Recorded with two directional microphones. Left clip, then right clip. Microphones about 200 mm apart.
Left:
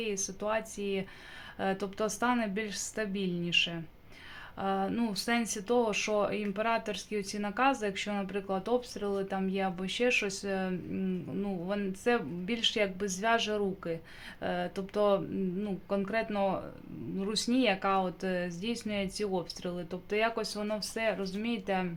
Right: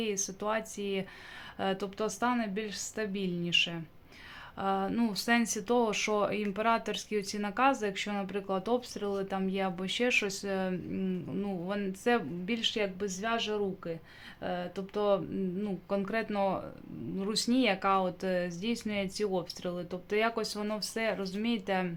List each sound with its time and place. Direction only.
0.0 s a woman's voice: 10° right (ahead or behind)